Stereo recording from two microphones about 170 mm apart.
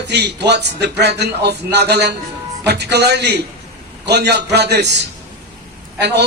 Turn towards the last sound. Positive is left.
turn(degrees=-80)